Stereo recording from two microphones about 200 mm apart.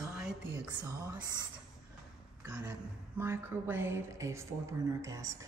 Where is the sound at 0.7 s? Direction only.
15° right (ahead or behind).